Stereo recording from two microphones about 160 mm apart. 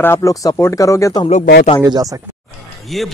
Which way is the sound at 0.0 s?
15° left (ahead or behind).